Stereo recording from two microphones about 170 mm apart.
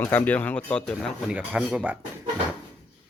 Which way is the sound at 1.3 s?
5° right (ahead or behind).